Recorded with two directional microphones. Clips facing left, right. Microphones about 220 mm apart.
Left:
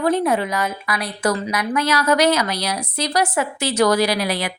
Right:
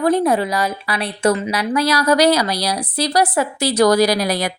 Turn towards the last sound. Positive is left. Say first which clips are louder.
# right 4 dB
turn(degrees=-40)  # may be behind; listen again after turning